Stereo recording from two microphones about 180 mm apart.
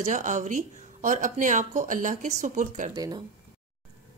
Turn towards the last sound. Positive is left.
turn(degrees=-20)  # may be behind; listen again after turning